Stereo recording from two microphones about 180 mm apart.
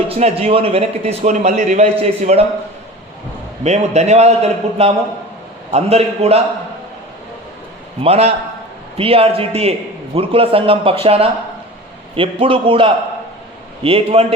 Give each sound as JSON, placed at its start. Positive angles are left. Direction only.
{"t": 0.1, "sound": "speech", "side_deg": -35}
{"t": 3.6, "sound": "speech", "side_deg": -40}
{"t": 8.0, "sound": "a man's voice", "side_deg": -35}